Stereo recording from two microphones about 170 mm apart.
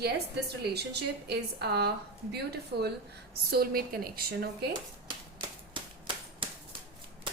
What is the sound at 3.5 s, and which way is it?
A woman's voice, 60° right (ahead or behind).